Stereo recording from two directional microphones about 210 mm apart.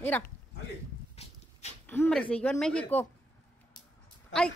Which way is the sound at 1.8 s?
5° left (ahead or behind).